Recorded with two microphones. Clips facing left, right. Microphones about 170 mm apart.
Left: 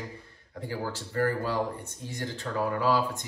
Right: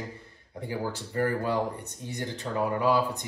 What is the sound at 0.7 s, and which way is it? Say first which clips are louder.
Speech: right 2 dB; 20° right (ahead or behind).